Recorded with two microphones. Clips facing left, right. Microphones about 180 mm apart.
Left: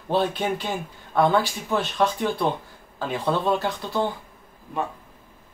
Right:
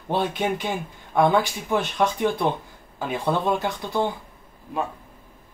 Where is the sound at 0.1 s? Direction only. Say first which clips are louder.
Left 1 dB; 15° right (ahead or behind).